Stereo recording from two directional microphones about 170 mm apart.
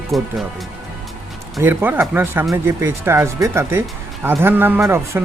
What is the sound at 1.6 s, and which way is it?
Speech, 10° right (ahead or behind).